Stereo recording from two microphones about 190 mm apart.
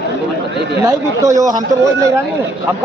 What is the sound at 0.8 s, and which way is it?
Speech, 15° right (ahead or behind).